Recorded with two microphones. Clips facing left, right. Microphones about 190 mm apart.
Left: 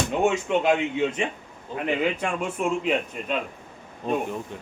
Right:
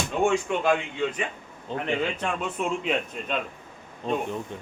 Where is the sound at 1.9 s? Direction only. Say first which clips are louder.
Left 3 dB; 10° left (ahead or behind).